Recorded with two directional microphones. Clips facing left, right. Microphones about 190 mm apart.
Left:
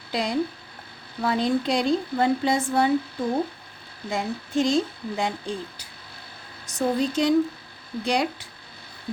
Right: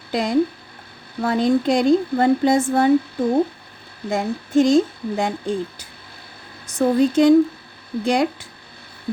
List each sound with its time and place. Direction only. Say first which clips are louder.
0.1 s a woman's voice: right 6 dB; 45° right (ahead or behind)
4.1 s a woman's voice: right 7 dB; 50° right (ahead or behind)